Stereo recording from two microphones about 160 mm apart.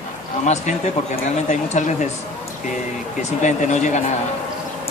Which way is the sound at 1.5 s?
50° left (ahead or behind).